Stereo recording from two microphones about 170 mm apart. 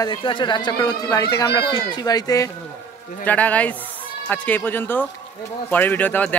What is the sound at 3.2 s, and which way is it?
Speech, 10° left (ahead or behind).